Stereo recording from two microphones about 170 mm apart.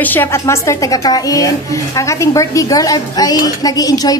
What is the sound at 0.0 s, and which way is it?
A woman's voice, 10° left (ahead or behind).